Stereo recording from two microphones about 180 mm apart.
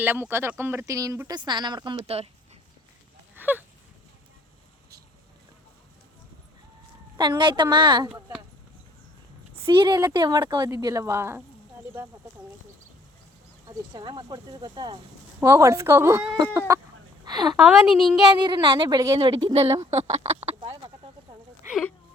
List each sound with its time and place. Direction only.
0.0 s speech: 10° right (ahead or behind); by 2.3 s 35° right (ahead or behind)
3.3 s a sound: 10° right (ahead or behind)
7.2 s speech: 25° right (ahead or behind)
9.6 s speech: 25° right (ahead or behind)
13.7 s speech: 20° right (ahead or behind)
16.6 s chicken: 15° right (ahead or behind)
17.2 s a sound: 25° right (ahead or behind)
17.6 s a woman's voice: centre (ahead or behind)
18.2 s speech: 25° right (ahead or behind)
19.9 s speech: 35° right (ahead or behind)